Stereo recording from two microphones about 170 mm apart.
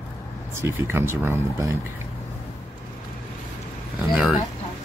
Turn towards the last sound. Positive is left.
turn(degrees=-5)  # may be behind; listen again after turning